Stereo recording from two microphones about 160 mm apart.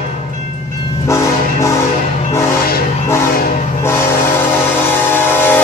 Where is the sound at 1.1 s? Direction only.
20° left (ahead or behind).